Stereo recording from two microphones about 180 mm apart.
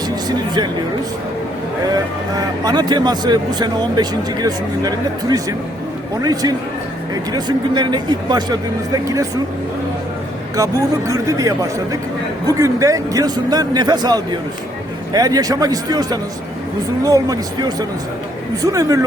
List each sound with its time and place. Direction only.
0.3 s speech: 25° right (ahead or behind)
2.3 s speech: 20° right (ahead or behind)
10.6 s speech: 15° right (ahead or behind)